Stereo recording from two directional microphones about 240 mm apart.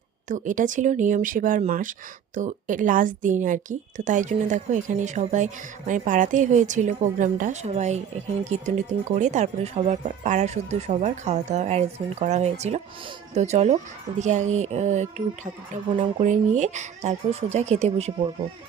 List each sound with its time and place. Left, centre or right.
0.3 s speech: right